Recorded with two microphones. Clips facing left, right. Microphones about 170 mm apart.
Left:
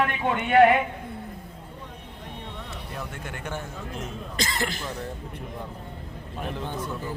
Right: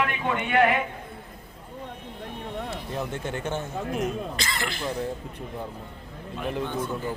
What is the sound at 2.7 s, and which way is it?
Speech, 25° right (ahead or behind).